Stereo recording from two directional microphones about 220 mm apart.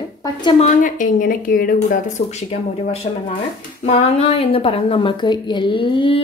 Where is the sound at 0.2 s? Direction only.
20° left (ahead or behind); by 2.2 s 35° left (ahead or behind).